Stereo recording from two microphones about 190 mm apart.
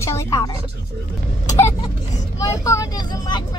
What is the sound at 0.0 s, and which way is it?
Music, 15° left (ahead or behind).